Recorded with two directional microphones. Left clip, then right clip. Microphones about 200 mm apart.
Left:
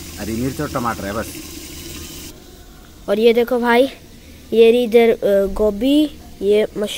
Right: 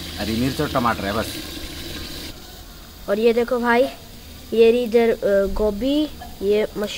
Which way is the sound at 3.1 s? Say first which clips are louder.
Left 4 dB; 15° left (ahead or behind).